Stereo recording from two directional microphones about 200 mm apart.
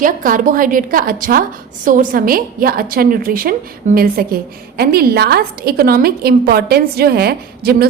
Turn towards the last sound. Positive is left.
turn(degrees=-50)  # may be behind; listen again after turning